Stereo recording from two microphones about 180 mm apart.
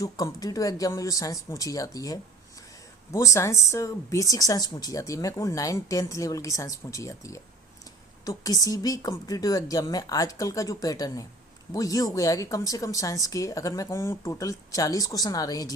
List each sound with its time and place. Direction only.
0.0 s speech: 20° left (ahead or behind)